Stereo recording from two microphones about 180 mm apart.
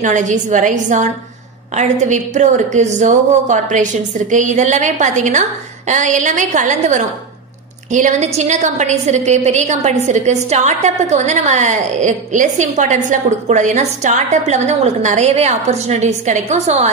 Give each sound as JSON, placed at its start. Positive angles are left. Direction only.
{"t": 0.0, "sound": "a woman's voice", "side_deg": -45}